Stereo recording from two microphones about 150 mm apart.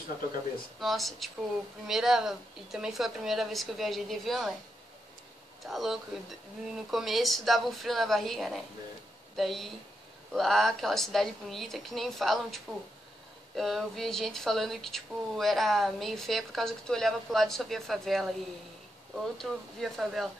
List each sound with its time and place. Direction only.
0.7 s speech: centre (ahead or behind)
5.7 s speech: centre (ahead or behind)
19.3 s speech: centre (ahead or behind)